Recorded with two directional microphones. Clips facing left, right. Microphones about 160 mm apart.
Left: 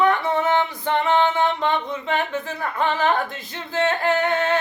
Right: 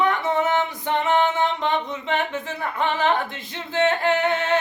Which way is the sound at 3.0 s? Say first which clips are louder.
Left 1 dB; 20° right (ahead or behind).